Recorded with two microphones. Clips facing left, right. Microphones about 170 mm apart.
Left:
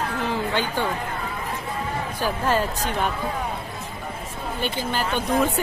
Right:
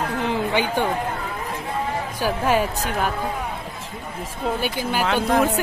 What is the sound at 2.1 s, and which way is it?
Speech, 10° right (ahead or behind).